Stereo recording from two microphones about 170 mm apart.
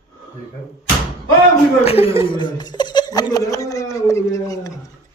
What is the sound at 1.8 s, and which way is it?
Speech, 35° left (ahead or behind).